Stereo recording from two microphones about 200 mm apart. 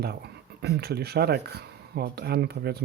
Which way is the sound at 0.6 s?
55° right (ahead or behind).